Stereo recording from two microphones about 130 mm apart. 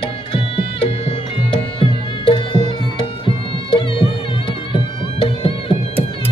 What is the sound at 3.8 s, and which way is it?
Music, 40° left (ahead or behind).